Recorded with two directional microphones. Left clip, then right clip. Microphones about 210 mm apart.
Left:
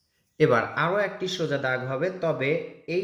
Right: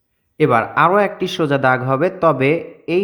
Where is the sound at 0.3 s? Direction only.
30° right (ahead or behind).